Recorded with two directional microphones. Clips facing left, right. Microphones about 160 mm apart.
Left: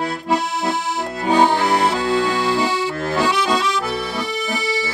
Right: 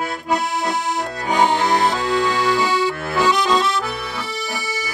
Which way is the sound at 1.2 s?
30° left (ahead or behind).